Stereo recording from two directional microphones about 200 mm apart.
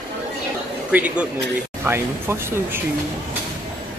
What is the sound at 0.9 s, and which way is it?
Speech, 5° right (ahead or behind).